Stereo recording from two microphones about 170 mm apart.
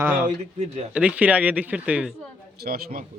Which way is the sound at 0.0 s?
10° right (ahead or behind).